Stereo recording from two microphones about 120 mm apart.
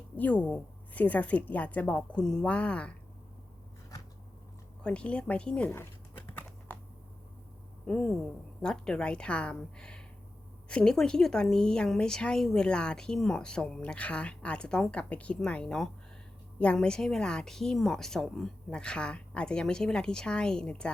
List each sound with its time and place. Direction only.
0.2 s a woman's voice: 10° left (ahead or behind)
4.8 s a woman's voice: 10° left (ahead or behind)
5.7 s a sound: 20° left (ahead or behind)
7.9 s a woman's voice: 5° left (ahead or behind)